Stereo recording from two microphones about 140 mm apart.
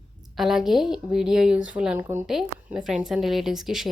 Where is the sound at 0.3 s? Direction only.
Centre (ahead or behind).